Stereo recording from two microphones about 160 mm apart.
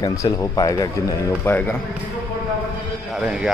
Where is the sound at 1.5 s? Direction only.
10° left (ahead or behind).